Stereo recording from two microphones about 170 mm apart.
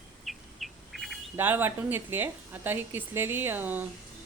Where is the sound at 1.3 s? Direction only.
10° right (ahead or behind).